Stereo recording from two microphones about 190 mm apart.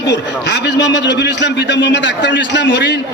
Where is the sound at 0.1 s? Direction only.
65° left (ahead or behind).